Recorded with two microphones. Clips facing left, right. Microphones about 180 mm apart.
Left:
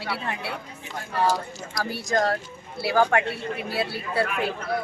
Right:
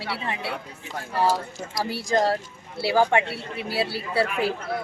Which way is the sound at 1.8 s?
30° right (ahead or behind).